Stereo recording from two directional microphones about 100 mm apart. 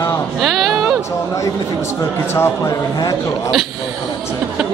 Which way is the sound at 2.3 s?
25° left (ahead or behind).